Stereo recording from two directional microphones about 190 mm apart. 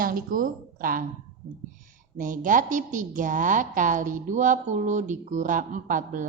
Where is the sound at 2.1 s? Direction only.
45° right (ahead or behind).